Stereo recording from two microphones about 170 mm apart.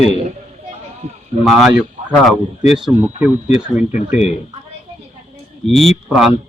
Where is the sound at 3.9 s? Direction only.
45° left (ahead or behind).